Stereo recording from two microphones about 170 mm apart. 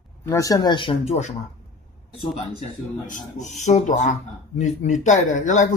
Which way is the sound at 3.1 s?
45° left (ahead or behind).